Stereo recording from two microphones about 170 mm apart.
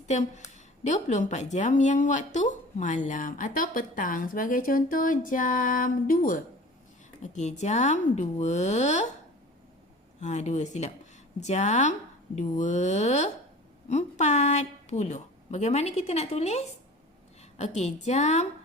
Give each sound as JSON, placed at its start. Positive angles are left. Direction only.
{"t": 0.1, "sound": "speech", "side_deg": 45}
{"t": 10.2, "sound": "a woman's voice", "side_deg": 45}